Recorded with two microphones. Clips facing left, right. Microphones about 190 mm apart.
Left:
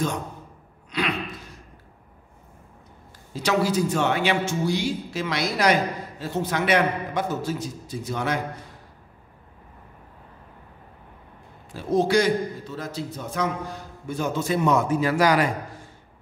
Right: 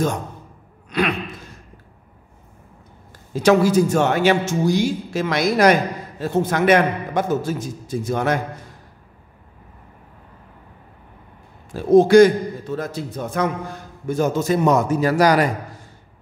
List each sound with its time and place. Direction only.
3.3 s speech: 50° right (ahead or behind)
11.7 s speech: 50° right (ahead or behind)